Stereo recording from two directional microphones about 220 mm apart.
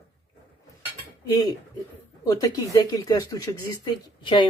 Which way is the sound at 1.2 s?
15° left (ahead or behind).